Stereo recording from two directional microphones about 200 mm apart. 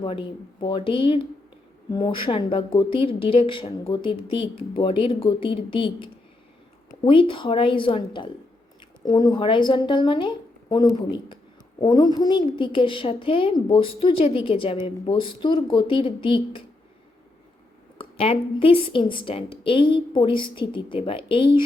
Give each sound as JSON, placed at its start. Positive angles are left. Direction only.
{"t": 0.0, "sound": "a woman's voice", "side_deg": 25}
{"t": 17.9, "sound": "a woman's voice", "side_deg": 25}